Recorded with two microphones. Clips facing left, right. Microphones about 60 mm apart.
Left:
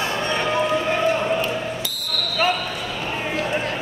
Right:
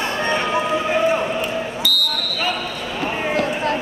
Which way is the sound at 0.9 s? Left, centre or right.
Centre.